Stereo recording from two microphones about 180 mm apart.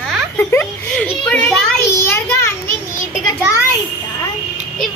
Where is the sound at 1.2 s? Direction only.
5° left (ahead or behind).